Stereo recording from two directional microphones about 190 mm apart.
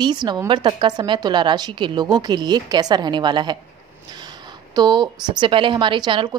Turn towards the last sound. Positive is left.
turn(degrees=-25)  # may be behind; listen again after turning